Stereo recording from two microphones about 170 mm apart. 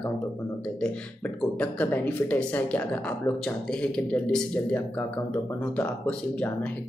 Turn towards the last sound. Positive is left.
turn(degrees=5)  # may be behind; listen again after turning